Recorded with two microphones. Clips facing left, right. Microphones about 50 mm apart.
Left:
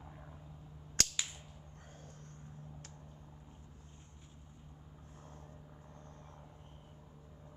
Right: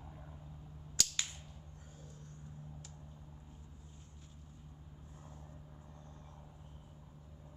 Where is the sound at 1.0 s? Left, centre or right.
Left.